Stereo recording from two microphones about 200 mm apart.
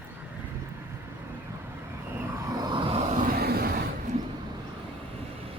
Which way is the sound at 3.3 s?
50° right (ahead or behind).